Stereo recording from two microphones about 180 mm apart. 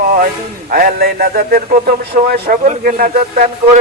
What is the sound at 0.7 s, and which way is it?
A man's voice, 55° right (ahead or behind).